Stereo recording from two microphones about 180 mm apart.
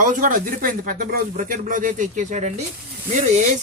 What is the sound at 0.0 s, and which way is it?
Speech, 45° right (ahead or behind).